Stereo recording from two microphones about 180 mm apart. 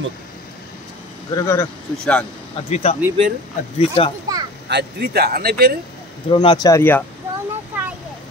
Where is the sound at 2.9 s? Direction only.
35° left (ahead or behind).